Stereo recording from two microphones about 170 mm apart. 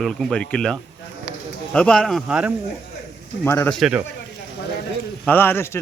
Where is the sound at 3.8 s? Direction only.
5° right (ahead or behind).